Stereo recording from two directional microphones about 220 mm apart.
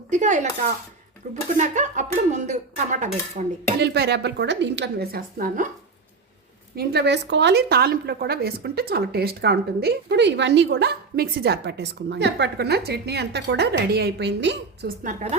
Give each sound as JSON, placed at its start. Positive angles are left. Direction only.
{"t": 0.1, "sound": "speech", "side_deg": -35}
{"t": 3.8, "sound": "a woman's voice", "side_deg": -50}
{"t": 6.7, "sound": "a woman's voice", "side_deg": -50}